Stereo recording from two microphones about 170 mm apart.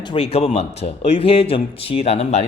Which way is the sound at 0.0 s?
35° left (ahead or behind).